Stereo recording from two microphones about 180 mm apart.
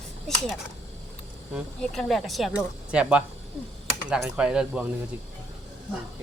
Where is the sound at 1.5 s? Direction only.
Centre (ahead or behind).